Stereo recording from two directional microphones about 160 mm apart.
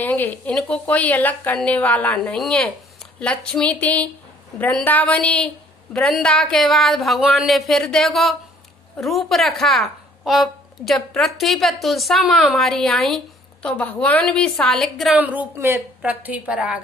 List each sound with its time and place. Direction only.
0.0 s a woman's voice: 10° left (ahead or behind)
15.1 s a woman's voice: 10° right (ahead or behind)